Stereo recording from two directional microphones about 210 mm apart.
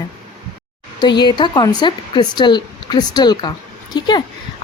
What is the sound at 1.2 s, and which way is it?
A woman's voice, 20° left (ahead or behind).